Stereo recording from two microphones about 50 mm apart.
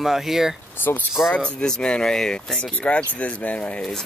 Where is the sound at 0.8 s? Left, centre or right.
Left.